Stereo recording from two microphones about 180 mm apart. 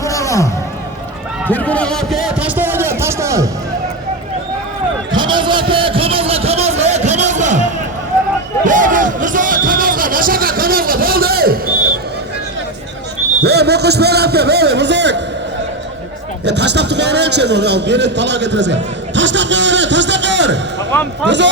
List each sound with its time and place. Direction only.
0.0 s music: 15° left (ahead or behind)
1.5 s a man's voice: 10° left (ahead or behind); by 3.5 s 15° right (ahead or behind)
5.1 s a sound: 25° right (ahead or behind); by 11.7 s 55° right (ahead or behind)
13.4 s a man's voice: 65° right (ahead or behind)
16.5 s a man's voice: 70° right (ahead or behind)
20.9 s speech: 10° left (ahead or behind)
21.2 s speech: 80° right